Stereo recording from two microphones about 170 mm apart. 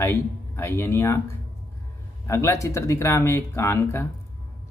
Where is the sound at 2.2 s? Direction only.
15° left (ahead or behind).